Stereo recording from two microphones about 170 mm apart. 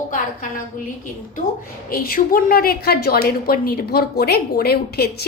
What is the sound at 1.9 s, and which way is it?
A woman's voice, 60° left (ahead or behind).